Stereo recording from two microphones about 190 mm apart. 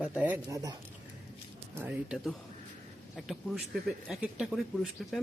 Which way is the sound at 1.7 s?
10° right (ahead or behind).